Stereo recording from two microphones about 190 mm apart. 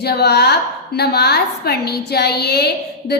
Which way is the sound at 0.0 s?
60° left (ahead or behind).